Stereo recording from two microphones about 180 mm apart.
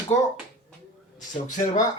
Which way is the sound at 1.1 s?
45° left (ahead or behind).